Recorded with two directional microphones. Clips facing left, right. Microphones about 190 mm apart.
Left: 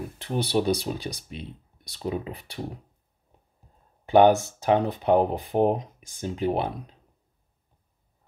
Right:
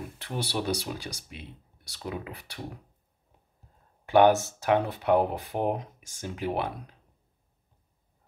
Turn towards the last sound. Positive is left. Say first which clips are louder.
# left 4 dB
turn(degrees=25)  # may be behind; listen again after turning